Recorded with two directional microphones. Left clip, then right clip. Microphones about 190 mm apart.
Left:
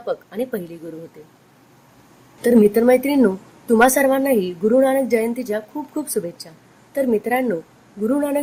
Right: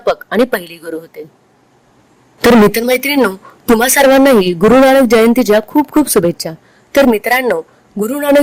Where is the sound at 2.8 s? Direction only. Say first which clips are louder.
Right 3 dB; 55° right (ahead or behind).